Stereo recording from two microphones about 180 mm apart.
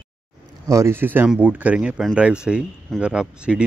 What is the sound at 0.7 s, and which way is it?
Speech, 15° right (ahead or behind).